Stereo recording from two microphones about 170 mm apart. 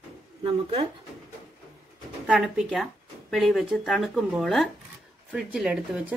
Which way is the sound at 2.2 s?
5° right (ahead or behind).